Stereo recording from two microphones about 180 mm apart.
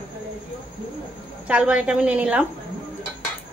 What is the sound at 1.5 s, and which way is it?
Speech, 5° right (ahead or behind).